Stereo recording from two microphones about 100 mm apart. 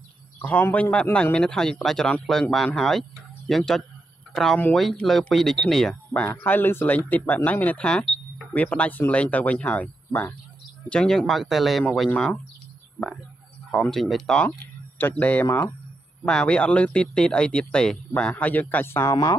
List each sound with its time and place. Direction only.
0.4 s speech: 15° left (ahead or behind)
6.4 s speech: 20° left (ahead or behind); by 11.8 s centre (ahead or behind)
13.7 s speech: 5° left (ahead or behind)
15.4 s speech: 35° left (ahead or behind)
16.3 s speech: 10° left (ahead or behind); by 19.1 s 25° left (ahead or behind)